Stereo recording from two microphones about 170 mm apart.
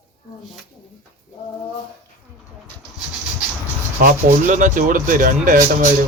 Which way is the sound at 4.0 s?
50° right (ahead or behind).